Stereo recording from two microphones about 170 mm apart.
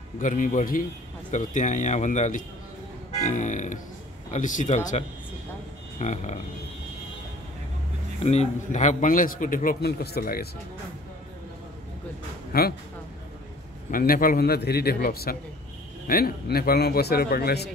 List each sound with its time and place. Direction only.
0.2 s a man's voice: 50° left (ahead or behind)
5.9 s a man's voice: 45° left (ahead or behind)
8.2 s a man's voice: 40° left (ahead or behind); by 10.5 s 65° left (ahead or behind)
12.5 s a man's voice: 65° left (ahead or behind)
13.8 s a man's voice: 55° left (ahead or behind)